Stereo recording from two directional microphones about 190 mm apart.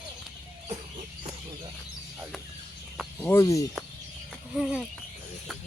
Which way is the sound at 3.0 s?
10° left (ahead or behind).